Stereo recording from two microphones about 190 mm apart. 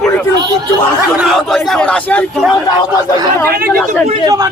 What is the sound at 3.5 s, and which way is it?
Speech, 50° right (ahead or behind).